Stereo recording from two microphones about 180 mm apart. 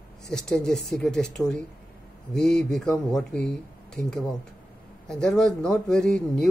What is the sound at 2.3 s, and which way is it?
Speech, 5° left (ahead or behind).